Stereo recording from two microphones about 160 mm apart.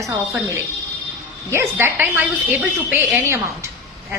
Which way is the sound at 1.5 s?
15° right (ahead or behind).